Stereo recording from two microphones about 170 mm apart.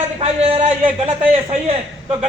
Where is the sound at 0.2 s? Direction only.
40° right (ahead or behind).